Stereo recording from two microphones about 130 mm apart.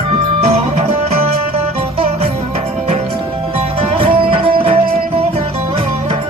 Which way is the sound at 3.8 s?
50° right (ahead or behind).